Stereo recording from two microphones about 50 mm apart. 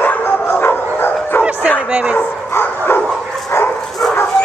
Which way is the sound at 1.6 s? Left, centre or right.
Left.